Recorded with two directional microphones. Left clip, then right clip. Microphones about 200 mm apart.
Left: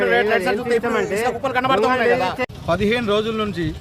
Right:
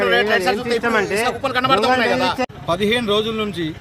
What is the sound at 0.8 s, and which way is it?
Speech, 40° right (ahead or behind).